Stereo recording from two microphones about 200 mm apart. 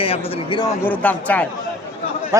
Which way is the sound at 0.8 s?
10° left (ahead or behind).